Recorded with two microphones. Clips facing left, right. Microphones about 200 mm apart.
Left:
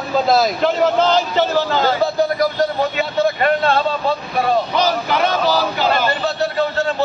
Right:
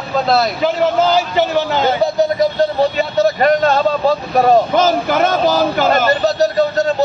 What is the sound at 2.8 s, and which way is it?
Vehicle, 40° right (ahead or behind).